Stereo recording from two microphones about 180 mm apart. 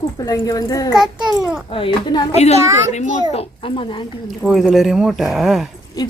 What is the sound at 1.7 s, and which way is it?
Speech, 25° left (ahead or behind).